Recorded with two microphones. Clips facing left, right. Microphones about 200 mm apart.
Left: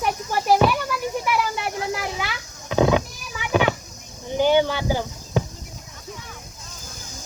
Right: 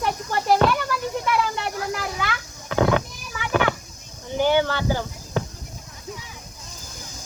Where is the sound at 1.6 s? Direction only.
20° left (ahead or behind).